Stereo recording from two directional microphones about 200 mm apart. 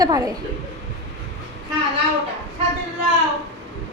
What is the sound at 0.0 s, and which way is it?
Speech, 20° right (ahead or behind).